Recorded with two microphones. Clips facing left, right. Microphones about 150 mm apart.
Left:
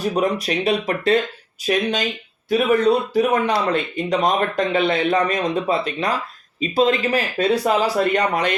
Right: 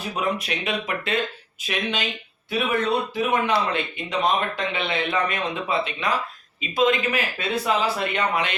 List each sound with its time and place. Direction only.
0.0 s speech: 35° left (ahead or behind)